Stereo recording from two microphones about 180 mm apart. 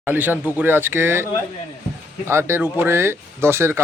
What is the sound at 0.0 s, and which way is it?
A man's voice, 10° right (ahead or behind).